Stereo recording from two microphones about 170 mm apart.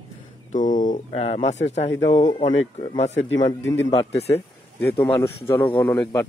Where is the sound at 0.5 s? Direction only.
50° left (ahead or behind).